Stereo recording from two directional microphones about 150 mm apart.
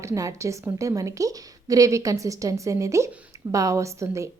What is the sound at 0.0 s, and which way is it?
A woman's voice, 20° right (ahead or behind).